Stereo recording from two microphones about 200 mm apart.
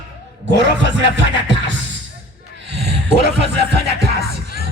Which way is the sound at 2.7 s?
55° right (ahead or behind).